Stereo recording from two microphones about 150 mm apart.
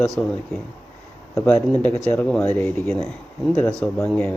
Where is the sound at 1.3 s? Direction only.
15° left (ahead or behind).